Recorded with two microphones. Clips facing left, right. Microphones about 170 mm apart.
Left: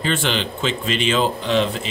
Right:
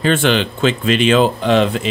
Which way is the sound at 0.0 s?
60° right (ahead or behind).